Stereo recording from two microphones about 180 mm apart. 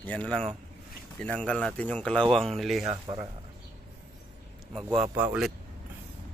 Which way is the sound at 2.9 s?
25° right (ahead or behind).